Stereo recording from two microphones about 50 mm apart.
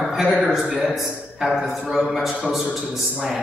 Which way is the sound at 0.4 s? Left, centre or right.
Centre.